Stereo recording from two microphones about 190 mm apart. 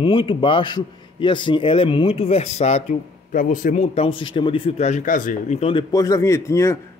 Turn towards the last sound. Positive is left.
turn(degrees=15)  # may be behind; listen again after turning